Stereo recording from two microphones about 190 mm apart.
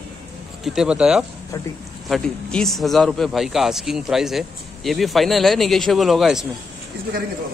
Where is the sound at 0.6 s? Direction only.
5° right (ahead or behind).